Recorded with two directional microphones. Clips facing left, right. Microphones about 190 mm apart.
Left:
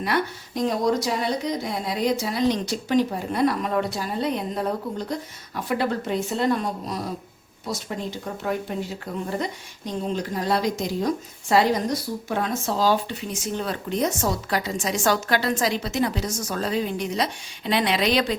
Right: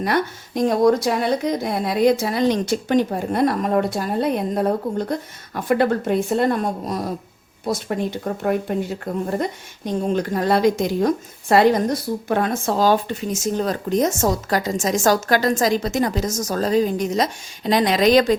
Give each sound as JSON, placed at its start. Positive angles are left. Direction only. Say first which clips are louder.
{"t": 0.0, "sound": "a woman's voice", "louder": "right 4 dB", "side_deg": -45}